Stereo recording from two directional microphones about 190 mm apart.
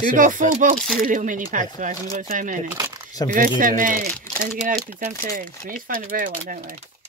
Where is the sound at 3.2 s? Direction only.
20° left (ahead or behind).